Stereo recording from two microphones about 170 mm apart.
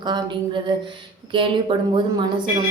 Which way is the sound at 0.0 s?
25° right (ahead or behind).